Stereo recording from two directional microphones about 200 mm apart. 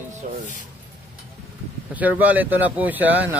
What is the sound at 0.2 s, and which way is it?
Speech, 40° right (ahead or behind).